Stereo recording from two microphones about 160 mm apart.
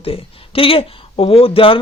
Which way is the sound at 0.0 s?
35° left (ahead or behind).